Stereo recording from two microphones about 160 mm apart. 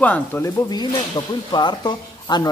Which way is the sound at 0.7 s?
25° left (ahead or behind).